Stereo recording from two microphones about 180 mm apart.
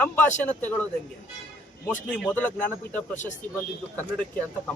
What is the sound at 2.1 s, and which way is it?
A man's voice, 10° left (ahead or behind).